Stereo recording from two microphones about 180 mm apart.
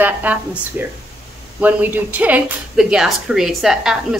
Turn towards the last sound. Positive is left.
turn(degrees=-5)  # may be behind; listen again after turning